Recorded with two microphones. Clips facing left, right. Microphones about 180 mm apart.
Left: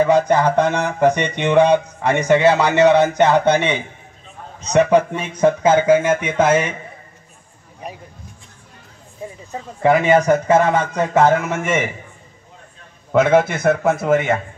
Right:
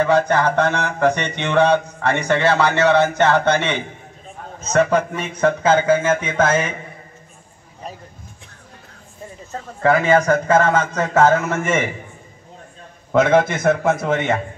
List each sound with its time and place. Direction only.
0.0 s a man's voice: 15° left (ahead or behind)
4.9 s a man's voice: 15° left (ahead or behind)
7.8 s a sound: 15° left (ahead or behind)
9.5 s a man's voice: 15° left (ahead or behind)
13.1 s a man's voice: 10° left (ahead or behind)